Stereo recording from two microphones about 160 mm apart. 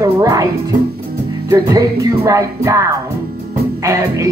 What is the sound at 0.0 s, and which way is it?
Music, 20° right (ahead or behind).